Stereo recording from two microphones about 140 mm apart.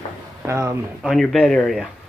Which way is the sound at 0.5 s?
20° right (ahead or behind).